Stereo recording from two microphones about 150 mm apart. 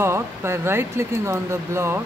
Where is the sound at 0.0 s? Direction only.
15° right (ahead or behind).